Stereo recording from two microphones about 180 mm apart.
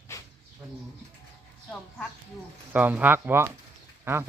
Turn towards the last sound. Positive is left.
turn(degrees=-15)  # may be behind; listen again after turning